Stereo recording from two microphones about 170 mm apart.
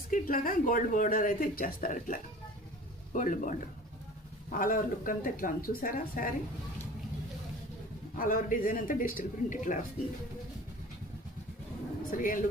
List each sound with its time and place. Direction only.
0.1 s speech: 55° left (ahead or behind)
8.2 s speech: 55° left (ahead or behind)
12.1 s speech: 50° left (ahead or behind)